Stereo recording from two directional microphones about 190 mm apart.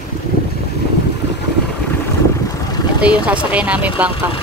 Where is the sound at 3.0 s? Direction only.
5° right (ahead or behind).